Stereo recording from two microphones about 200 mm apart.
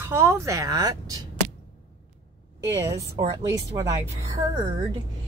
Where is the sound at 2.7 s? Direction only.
15° right (ahead or behind).